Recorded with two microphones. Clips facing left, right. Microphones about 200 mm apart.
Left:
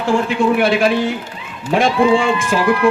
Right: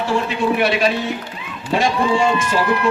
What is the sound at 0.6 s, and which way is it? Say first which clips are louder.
Speech: left 1 dB; 50° left (ahead or behind).